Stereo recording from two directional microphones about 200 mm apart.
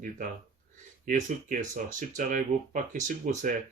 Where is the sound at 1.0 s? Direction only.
40° right (ahead or behind).